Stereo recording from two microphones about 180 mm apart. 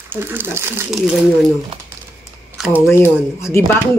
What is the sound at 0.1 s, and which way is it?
Speech, 10° right (ahead or behind).